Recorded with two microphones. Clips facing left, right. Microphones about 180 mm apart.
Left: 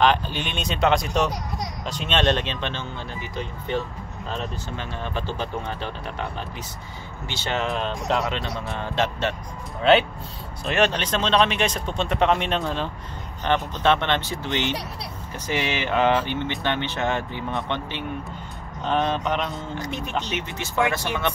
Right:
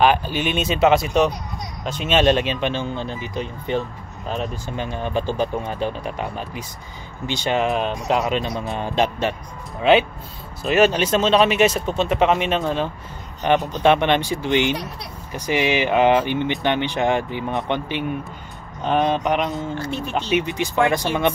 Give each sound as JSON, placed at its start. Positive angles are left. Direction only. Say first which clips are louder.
{"t": 0.0, "sound": "speech", "louder": "right 3 dB", "side_deg": -5}
{"t": 10.6, "sound": "speech", "louder": "right 5 dB", "side_deg": -5}
{"t": 13.4, "sound": "speech", "louder": "right 5 dB", "side_deg": -15}
{"t": 19.8, "sound": "speech", "louder": "right 4 dB", "side_deg": 15}
{"t": 20.2, "sound": "speech", "louder": "right 9 dB", "side_deg": -15}